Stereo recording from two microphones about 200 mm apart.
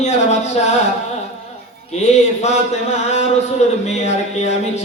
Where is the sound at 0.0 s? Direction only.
35° left (ahead or behind).